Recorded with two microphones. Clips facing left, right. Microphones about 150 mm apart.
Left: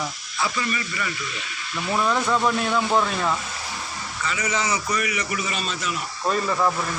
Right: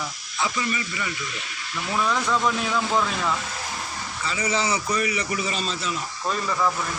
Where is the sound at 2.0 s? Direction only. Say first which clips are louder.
Left 2 dB; 10° left (ahead or behind).